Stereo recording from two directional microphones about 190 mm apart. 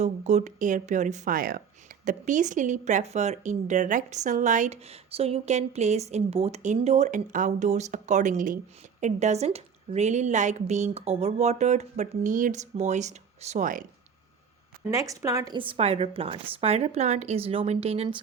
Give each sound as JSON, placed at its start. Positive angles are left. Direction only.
{"t": 0.0, "sound": "a woman's voice", "side_deg": -40}
{"t": 14.8, "sound": "a woman's voice", "side_deg": -15}